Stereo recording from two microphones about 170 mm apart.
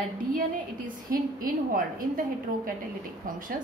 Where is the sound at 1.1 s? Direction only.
55° right (ahead or behind).